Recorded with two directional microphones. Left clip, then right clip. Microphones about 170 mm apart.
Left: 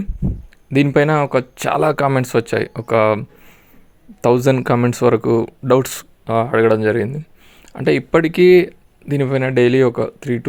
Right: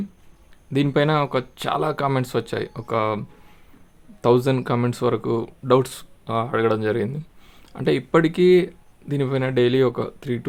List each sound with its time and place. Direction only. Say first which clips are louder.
0.7 s speech: left 6 dB; 25° left (ahead or behind)